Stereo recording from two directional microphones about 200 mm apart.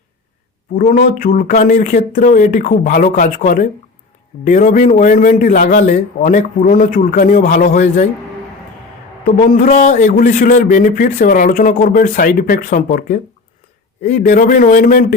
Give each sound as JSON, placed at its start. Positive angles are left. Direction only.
{"t": 0.8, "sound": "a man's voice", "side_deg": 45}
{"t": 9.2, "sound": "a man's voice", "side_deg": 45}